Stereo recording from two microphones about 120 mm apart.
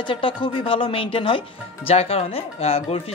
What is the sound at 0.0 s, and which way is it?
Speech, 45° left (ahead or behind).